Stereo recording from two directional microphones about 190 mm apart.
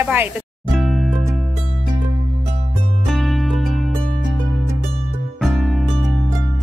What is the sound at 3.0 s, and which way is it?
Music, centre (ahead or behind).